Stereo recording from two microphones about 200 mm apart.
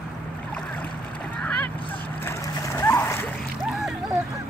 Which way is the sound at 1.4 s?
5° left (ahead or behind).